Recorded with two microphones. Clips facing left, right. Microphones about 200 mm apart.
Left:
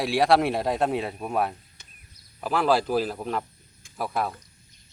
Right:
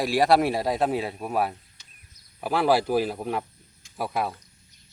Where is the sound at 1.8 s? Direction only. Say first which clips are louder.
Left 4 dB; 55° left (ahead or behind).